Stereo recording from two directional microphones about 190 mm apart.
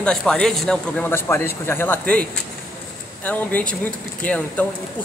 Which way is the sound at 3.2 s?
10° left (ahead or behind).